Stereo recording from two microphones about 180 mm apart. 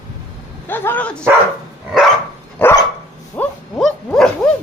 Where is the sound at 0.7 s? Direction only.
10° left (ahead or behind).